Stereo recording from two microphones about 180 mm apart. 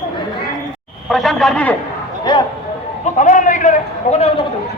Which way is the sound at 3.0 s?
45° left (ahead or behind).